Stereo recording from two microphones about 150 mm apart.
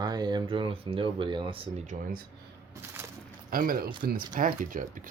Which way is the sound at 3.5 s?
75° right (ahead or behind).